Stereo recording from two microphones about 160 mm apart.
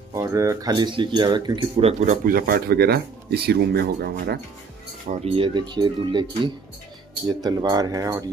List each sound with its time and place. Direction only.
0.1 s speech: 20° right (ahead or behind); by 2.1 s 40° right (ahead or behind)
2.2 s speech: 65° right (ahead or behind)
5.1 s speech: 40° right (ahead or behind); by 8.3 s 20° right (ahead or behind)